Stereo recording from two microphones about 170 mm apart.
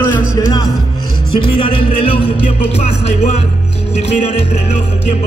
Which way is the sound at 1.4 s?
30° left (ahead or behind).